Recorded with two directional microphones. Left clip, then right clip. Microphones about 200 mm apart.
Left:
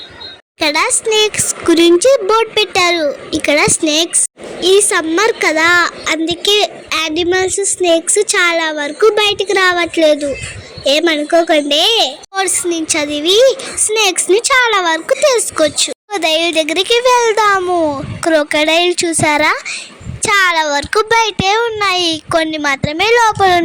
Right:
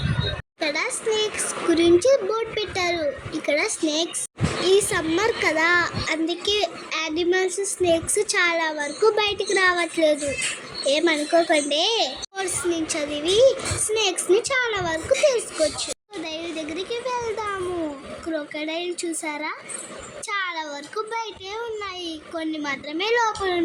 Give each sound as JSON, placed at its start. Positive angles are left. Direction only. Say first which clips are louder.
{"t": 0.6, "sound": "a woman's voice", "louder": "left 11 dB", "side_deg": 40}